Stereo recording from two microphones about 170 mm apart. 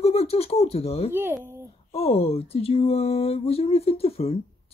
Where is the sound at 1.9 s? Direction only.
35° left (ahead or behind).